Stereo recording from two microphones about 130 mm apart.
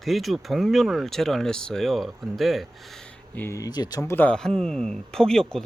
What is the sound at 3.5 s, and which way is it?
Speech, 30° left (ahead or behind).